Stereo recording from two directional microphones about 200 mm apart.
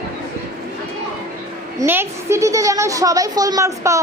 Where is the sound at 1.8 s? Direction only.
10° right (ahead or behind).